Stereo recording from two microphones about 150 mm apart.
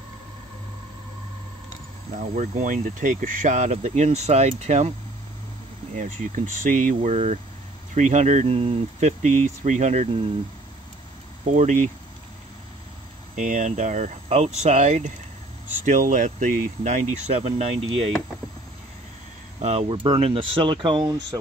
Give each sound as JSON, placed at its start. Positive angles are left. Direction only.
{"t": 2.1, "sound": "speech", "side_deg": -55}
{"t": 5.9, "sound": "speech", "side_deg": -55}
{"t": 7.9, "sound": "speech", "side_deg": -50}
{"t": 11.4, "sound": "speech", "side_deg": -55}
{"t": 13.4, "sound": "speech", "side_deg": -55}
{"t": 19.6, "sound": "speech", "side_deg": -45}